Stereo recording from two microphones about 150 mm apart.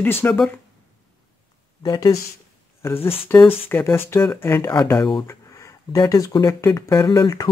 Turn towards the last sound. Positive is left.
turn(degrees=25)  # may be behind; listen again after turning